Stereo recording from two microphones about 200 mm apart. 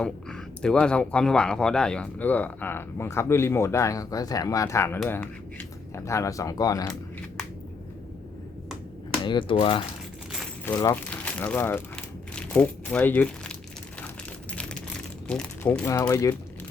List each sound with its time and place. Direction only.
0.0 s speech: 5° left (ahead or behind)
9.2 s speech: 25° left (ahead or behind)
10.7 s speech: 15° left (ahead or behind)
14.5 s a sound: 5° left (ahead or behind)
15.3 s speech: 5° left (ahead or behind)